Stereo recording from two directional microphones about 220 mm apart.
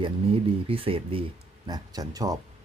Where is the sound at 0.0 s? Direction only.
25° right (ahead or behind).